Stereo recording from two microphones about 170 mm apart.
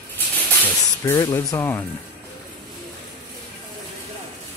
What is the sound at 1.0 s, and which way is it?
Speech, 15° left (ahead or behind).